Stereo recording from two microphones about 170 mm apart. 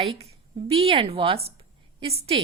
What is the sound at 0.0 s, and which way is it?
A woman's voice, 35° right (ahead or behind).